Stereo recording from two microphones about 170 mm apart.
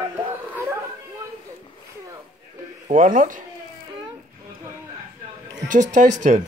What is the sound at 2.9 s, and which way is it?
Speech, 50° right (ahead or behind).